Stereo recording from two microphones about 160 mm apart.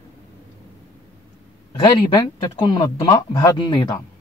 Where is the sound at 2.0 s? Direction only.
25° left (ahead or behind).